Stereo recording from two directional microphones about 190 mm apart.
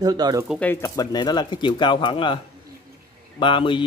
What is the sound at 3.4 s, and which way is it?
Speech, 25° left (ahead or behind).